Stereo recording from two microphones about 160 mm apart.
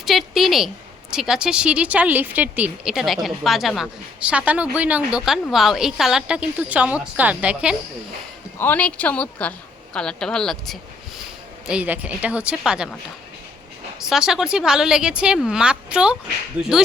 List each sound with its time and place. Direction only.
0.0 s a woman's voice: centre (ahead or behind)
8.5 s a woman's voice: 10° left (ahead or behind)
11.7 s speech: 10° right (ahead or behind)
14.0 s a woman's voice: 5° right (ahead or behind)